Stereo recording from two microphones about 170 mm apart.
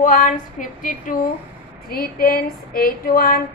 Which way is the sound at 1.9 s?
60° left (ahead or behind).